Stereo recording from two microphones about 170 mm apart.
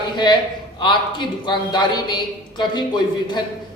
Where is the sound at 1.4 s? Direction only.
25° left (ahead or behind).